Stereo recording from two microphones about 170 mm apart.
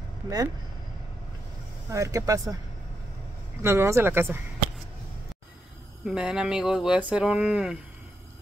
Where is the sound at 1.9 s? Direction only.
20° right (ahead or behind).